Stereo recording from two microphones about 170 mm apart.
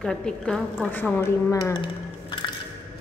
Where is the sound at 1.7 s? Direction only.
30° left (ahead or behind).